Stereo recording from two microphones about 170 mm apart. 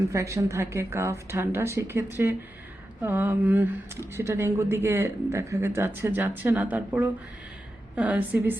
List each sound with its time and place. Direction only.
0.1 s speech: 15° right (ahead or behind)